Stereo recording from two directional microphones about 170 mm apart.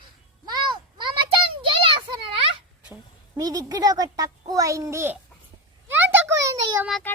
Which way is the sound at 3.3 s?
20° right (ahead or behind).